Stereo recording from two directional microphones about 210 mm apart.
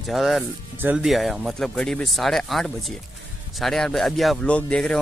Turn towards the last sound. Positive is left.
turn(degrees=5)  # may be behind; listen again after turning